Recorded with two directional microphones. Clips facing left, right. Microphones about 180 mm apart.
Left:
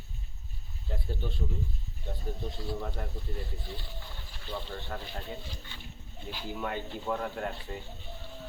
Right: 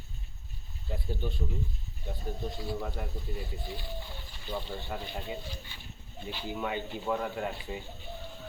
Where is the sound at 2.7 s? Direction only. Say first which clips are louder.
Right 1 dB; 5° right (ahead or behind).